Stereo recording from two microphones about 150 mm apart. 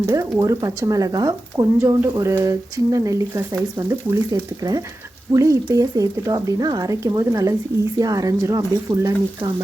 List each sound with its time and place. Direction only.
0.0 s speech: 20° right (ahead or behind)